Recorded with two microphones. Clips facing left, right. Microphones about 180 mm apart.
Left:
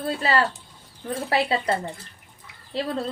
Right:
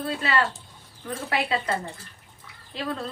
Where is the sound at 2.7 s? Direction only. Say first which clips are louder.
Left 4 dB; 30° left (ahead or behind).